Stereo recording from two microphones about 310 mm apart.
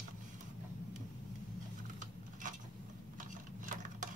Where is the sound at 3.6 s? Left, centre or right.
Right.